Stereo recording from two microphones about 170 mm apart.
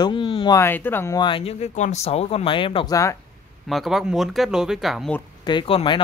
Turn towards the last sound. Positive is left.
turn(degrees=30)  # may be behind; listen again after turning